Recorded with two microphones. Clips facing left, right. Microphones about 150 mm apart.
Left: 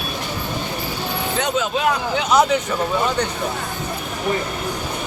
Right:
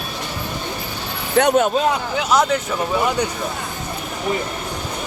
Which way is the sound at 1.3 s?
60° right (ahead or behind).